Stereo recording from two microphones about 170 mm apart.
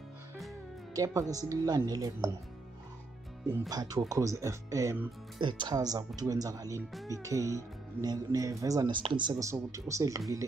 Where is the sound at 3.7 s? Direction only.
20° right (ahead or behind).